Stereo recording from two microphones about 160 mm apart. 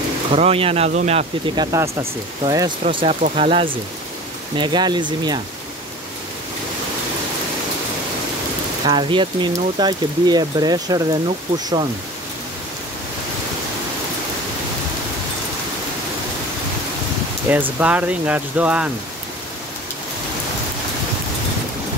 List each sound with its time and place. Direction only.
0.3 s speech: 35° right (ahead or behind)
1.5 s speech: 25° right (ahead or behind)
2.8 s speech: 35° right (ahead or behind)
8.8 s speech: 30° right (ahead or behind)
17.5 s speech: 10° right (ahead or behind)